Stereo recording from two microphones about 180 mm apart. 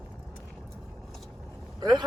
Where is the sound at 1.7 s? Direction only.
25° right (ahead or behind).